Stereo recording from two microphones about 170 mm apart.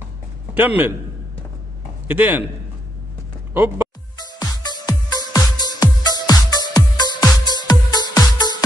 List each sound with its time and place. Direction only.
0.6 s a man's voice: 10° right (ahead or behind)
2.0 s a man's voice: 10° right (ahead or behind)
3.5 s a man's voice: 10° right (ahead or behind)
4.2 s music: 25° left (ahead or behind)